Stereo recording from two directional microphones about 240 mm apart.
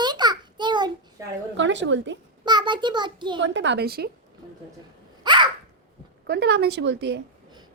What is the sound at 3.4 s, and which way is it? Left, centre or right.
Speech, right.